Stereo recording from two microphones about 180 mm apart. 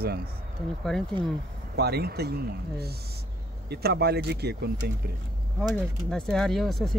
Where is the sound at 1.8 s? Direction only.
60° right (ahead or behind).